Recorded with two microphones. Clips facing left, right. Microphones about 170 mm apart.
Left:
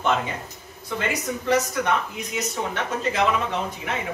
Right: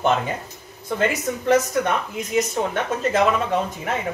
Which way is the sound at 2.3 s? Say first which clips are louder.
Right 6 dB; 50° right (ahead or behind).